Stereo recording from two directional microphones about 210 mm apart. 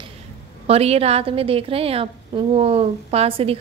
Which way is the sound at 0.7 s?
30° right (ahead or behind).